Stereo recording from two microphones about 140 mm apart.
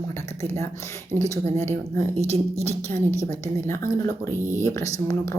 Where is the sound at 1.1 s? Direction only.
20° left (ahead or behind).